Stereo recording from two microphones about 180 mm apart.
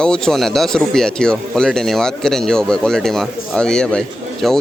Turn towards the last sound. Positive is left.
turn(degrees=0)  # may be behind; listen again after turning